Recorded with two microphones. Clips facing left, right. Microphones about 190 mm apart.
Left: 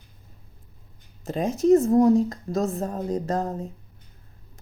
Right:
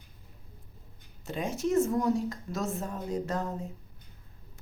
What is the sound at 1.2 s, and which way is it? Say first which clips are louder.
A woman's voice: left 8 dB; 40° left (ahead or behind).